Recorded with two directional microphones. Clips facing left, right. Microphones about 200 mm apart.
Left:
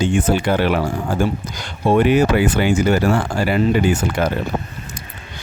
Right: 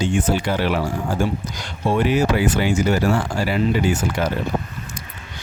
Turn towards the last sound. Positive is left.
turn(degrees=55)  # may be behind; listen again after turning